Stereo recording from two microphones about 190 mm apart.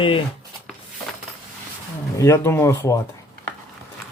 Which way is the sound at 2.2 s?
15° left (ahead or behind).